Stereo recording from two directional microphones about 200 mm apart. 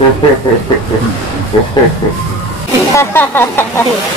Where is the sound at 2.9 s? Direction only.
10° left (ahead or behind).